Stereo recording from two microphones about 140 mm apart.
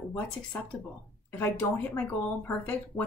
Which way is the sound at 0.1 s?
10° left (ahead or behind).